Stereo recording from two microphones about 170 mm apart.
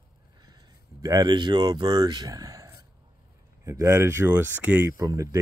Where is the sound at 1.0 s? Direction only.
25° right (ahead or behind).